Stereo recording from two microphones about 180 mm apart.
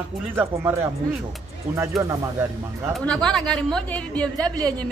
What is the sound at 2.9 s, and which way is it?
Speech, 5° left (ahead or behind).